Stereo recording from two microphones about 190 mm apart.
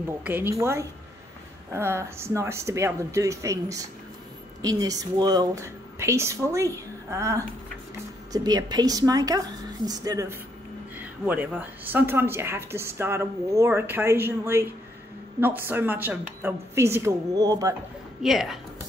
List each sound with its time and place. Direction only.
0.2 s a woman's voice: 10° right (ahead or behind)
18.2 s a woman's voice: centre (ahead or behind)